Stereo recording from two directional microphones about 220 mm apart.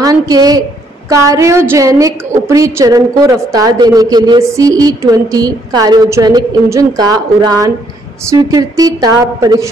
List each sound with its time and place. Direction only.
0.0 s a woman's voice: 15° right (ahead or behind)